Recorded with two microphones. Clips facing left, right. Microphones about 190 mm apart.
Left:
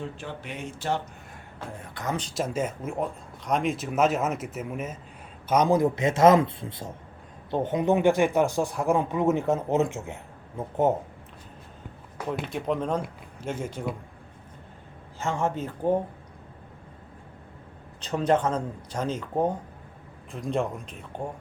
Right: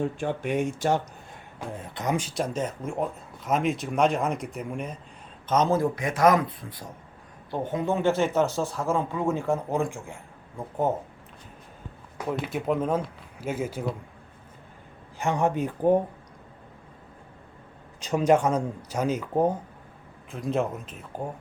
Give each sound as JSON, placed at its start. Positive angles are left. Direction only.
{"t": 0.0, "sound": "speech", "side_deg": -50}
{"t": 1.5, "sound": "a man's voice", "side_deg": -20}
{"t": 2.1, "sound": "speech", "side_deg": -10}
{"t": 2.4, "sound": "a man's voice", "side_deg": 10}
{"t": 12.1, "sound": "speech", "side_deg": -5}
{"t": 15.2, "sound": "speech", "side_deg": -15}
{"t": 18.0, "sound": "speech", "side_deg": -10}